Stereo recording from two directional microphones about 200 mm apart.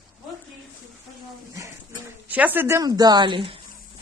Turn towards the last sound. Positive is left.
turn(degrees=-25)  # may be behind; listen again after turning